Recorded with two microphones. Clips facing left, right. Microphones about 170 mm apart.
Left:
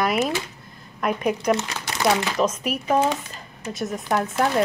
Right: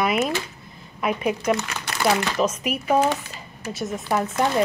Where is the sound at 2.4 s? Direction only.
5° right (ahead or behind).